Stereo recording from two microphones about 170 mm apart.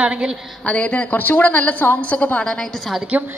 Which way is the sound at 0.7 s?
5° left (ahead or behind).